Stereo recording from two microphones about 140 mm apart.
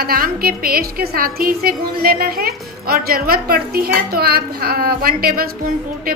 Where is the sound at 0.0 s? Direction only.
90° right.